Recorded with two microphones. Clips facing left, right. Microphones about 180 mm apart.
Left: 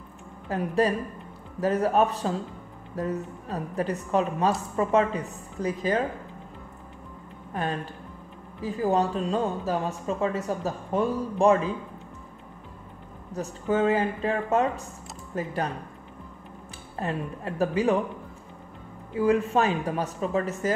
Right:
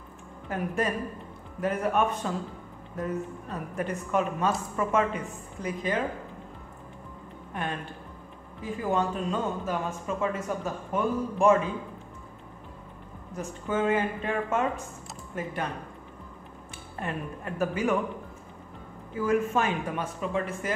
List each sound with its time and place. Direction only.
0.5 s speech: 35° left (ahead or behind)
7.5 s speech: 35° left (ahead or behind)
13.3 s speech: 35° left (ahead or behind)
17.0 s speech: 35° left (ahead or behind)
19.1 s speech: 30° left (ahead or behind)